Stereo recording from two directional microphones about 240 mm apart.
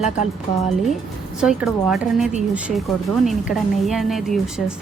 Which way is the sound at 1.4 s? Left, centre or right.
Centre.